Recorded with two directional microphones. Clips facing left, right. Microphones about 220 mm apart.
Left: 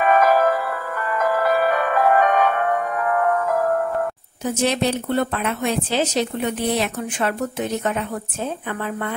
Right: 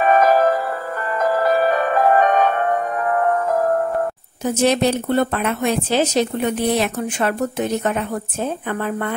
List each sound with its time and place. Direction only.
0.0 s music: 35° right (ahead or behind)
4.6 s speech: 45° right (ahead or behind)